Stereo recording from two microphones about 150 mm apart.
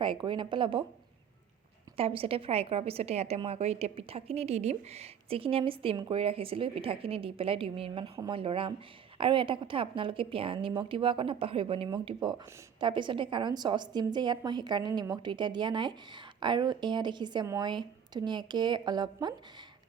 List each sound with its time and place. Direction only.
0.0 s a woman's voice: 30° right (ahead or behind)
2.0 s a woman's voice: 40° right (ahead or behind)
17.4 s a woman's voice: 20° right (ahead or behind)
17.7 s a woman's voice: 30° right (ahead or behind)